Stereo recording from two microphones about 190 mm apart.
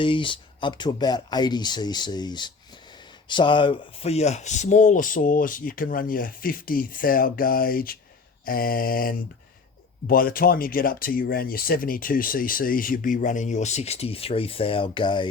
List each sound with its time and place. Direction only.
0.0 s speech: 25° left (ahead or behind)